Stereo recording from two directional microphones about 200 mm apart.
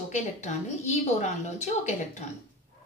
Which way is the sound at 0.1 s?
35° left (ahead or behind).